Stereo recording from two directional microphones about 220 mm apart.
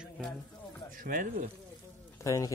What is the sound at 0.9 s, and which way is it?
Speech, 40° right (ahead or behind).